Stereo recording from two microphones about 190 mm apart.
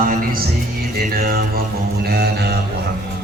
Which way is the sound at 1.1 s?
55° right (ahead or behind).